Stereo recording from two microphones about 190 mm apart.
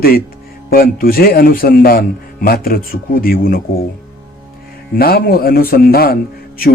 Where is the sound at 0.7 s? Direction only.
50° left (ahead or behind).